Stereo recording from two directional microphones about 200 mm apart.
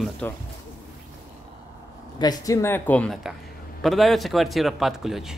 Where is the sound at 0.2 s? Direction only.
5° left (ahead or behind).